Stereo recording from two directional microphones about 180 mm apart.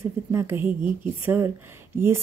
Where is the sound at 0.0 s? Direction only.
15° right (ahead or behind).